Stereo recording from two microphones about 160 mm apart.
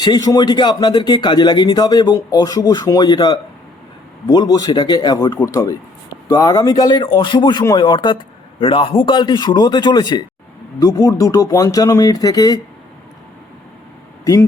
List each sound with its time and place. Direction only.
0.0 s speech: 25° left (ahead or behind)